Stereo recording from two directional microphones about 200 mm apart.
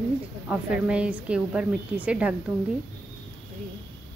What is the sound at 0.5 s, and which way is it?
A woman's voice, 5° right (ahead or behind).